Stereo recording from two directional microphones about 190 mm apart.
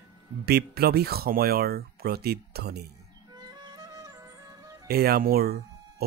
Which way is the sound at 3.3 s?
20° right (ahead or behind).